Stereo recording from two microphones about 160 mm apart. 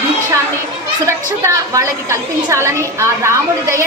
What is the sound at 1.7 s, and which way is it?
A woman's voice, 20° right (ahead or behind).